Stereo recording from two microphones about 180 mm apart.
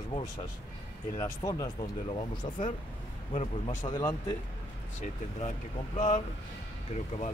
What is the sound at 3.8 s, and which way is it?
Speech, 20° left (ahead or behind).